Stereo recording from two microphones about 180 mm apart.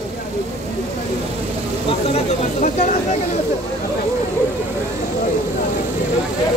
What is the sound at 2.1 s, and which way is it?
Speech, 45° left (ahead or behind).